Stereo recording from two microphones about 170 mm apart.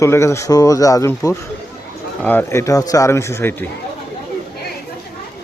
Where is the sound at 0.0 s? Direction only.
15° left (ahead or behind).